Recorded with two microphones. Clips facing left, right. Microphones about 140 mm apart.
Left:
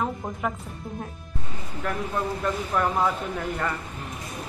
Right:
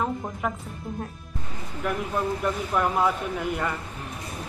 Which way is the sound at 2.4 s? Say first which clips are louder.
Left 2 dB; 5° right (ahead or behind).